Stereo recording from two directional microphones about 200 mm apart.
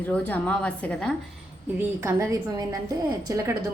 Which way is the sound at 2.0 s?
15° right (ahead or behind).